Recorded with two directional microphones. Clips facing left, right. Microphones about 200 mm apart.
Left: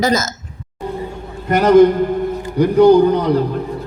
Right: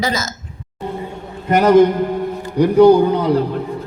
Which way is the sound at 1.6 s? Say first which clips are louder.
Left 2 dB; centre (ahead or behind).